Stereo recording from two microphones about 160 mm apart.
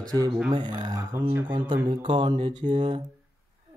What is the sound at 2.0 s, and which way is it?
Mantra, 30° right (ahead or behind).